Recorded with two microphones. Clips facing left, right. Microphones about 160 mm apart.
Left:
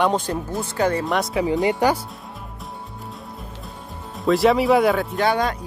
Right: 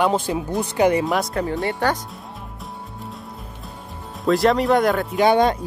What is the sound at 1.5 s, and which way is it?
Speech, 15° left (ahead or behind).